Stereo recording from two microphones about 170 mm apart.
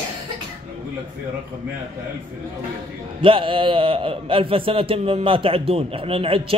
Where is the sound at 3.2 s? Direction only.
30° right (ahead or behind).